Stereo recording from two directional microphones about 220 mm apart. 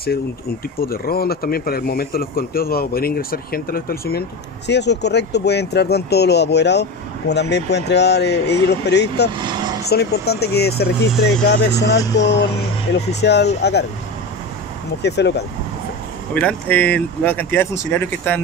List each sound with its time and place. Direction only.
0.7 s speech: 45° left (ahead or behind)
15.0 s speech: 50° left (ahead or behind)
16.3 s speech: 5° left (ahead or behind)